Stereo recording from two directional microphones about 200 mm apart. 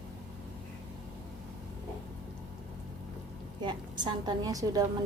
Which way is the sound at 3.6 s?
20° right (ahead or behind).